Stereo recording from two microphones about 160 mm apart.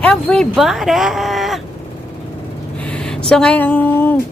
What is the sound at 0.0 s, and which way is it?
Speech, 5° left (ahead or behind).